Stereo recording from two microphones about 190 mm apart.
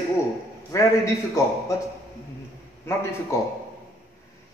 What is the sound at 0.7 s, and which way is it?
Speech, 15° left (ahead or behind).